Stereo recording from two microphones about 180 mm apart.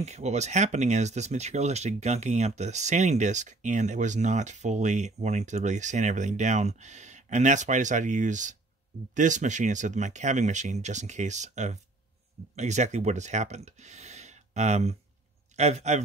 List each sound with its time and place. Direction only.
0.0 s speech: 40° right (ahead or behind)